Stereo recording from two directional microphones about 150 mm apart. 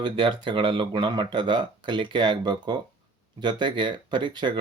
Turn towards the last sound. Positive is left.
turn(degrees=-30)  # may be behind; listen again after turning